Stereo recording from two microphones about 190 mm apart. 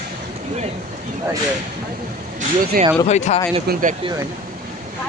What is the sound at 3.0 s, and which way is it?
Speech, 35° left (ahead or behind).